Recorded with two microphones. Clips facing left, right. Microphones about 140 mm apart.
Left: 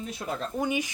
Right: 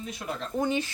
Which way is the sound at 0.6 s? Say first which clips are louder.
Right 2 dB; 10° left (ahead or behind).